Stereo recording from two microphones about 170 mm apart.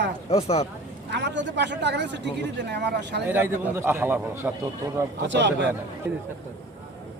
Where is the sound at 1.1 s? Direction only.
90° right.